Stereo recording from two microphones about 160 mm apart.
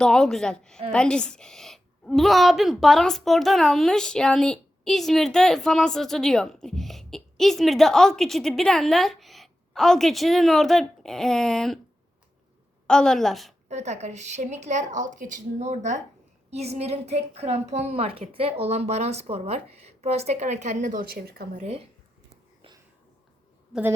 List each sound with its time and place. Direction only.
0.0 s a woman's voice: 5° left (ahead or behind)
12.9 s a woman's voice: 5° left (ahead or behind)
13.7 s a woman's voice: 45° right (ahead or behind); by 21.6 s 70° right (ahead or behind)